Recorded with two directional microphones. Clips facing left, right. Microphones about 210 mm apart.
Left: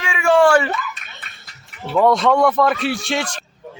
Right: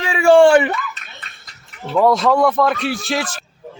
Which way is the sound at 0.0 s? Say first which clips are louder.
Right 4 dB; 35° right (ahead or behind).